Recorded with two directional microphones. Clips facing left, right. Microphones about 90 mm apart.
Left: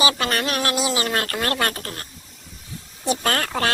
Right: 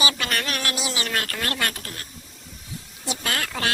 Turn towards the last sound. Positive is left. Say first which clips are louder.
# left 5 dB
turn(degrees=40)  # may be behind; listen again after turning